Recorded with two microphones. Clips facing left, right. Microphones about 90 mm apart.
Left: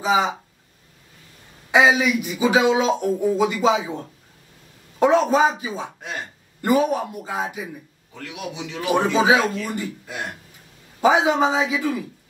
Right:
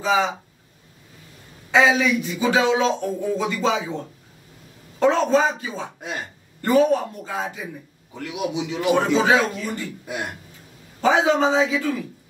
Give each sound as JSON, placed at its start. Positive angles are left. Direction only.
{"t": 0.0, "sound": "speech", "side_deg": 10}
{"t": 1.7, "sound": "speech", "side_deg": 10}
{"t": 4.9, "sound": "speech", "side_deg": 10}
{"t": 8.1, "sound": "a man's voice", "side_deg": -20}
{"t": 9.1, "sound": "speech", "side_deg": 10}
{"t": 11.0, "sound": "speech", "side_deg": 10}